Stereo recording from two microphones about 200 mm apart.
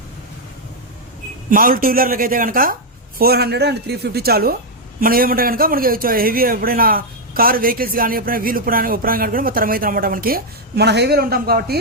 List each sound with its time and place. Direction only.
1.5 s a man's voice: 45° right (ahead or behind)